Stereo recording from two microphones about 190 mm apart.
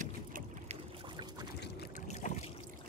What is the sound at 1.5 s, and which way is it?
Boat, 60° left (ahead or behind).